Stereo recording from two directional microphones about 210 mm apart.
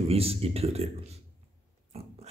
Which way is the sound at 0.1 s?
30° right (ahead or behind).